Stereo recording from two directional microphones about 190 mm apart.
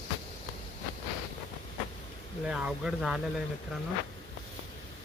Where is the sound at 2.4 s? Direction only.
5° right (ahead or behind).